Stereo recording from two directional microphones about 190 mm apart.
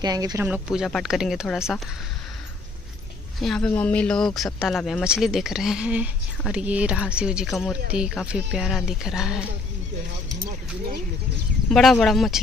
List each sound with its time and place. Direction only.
0.0 s speech: 20° right (ahead or behind)
0.5 s speech: 5° right (ahead or behind)
3.3 s speech: centre (ahead or behind)
11.7 s speech: centre (ahead or behind)